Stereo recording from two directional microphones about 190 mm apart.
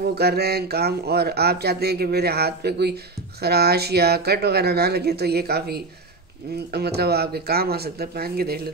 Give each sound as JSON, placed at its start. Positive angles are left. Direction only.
{"t": 0.0, "sound": "speech", "side_deg": -55}